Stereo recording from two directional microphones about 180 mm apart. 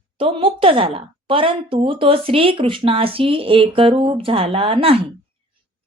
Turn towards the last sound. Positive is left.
turn(degrees=-30)  # may be behind; listen again after turning